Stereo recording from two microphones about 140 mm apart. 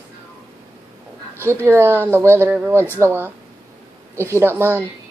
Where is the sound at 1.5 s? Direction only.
15° right (ahead or behind).